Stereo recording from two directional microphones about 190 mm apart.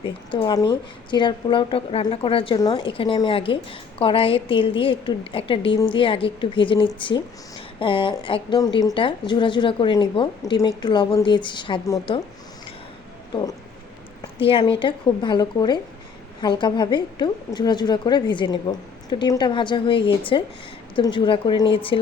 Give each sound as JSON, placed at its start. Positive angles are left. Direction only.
{"t": 0.0, "sound": "speech", "side_deg": 25}
{"t": 14.2, "sound": "speech", "side_deg": 30}